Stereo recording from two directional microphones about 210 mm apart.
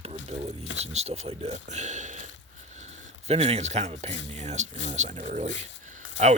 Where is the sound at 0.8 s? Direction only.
30° right (ahead or behind).